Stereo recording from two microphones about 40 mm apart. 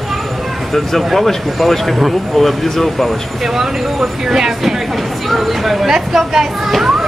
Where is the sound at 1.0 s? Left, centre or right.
Centre.